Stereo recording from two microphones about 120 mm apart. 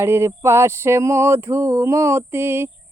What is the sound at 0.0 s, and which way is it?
Mantra, 20° right (ahead or behind).